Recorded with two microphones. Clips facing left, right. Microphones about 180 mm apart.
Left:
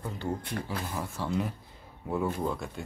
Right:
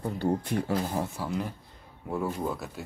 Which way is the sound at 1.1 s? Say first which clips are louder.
Left 1 dB; 5° right (ahead or behind).